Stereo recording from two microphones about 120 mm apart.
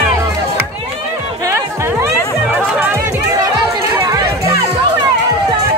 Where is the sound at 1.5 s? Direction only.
25° right (ahead or behind).